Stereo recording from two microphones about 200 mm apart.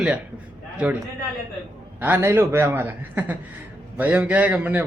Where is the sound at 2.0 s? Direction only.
10° right (ahead or behind).